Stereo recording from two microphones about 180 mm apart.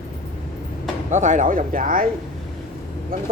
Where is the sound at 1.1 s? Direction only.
45° right (ahead or behind).